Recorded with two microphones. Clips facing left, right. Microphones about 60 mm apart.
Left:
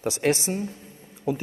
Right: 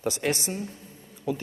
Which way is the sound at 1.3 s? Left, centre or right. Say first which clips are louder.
Left 3 dB; left.